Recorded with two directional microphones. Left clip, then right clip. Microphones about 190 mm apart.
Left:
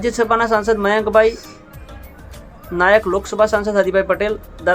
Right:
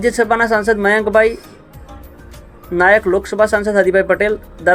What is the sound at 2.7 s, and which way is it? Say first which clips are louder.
Speech: right 2 dB; 15° right (ahead or behind).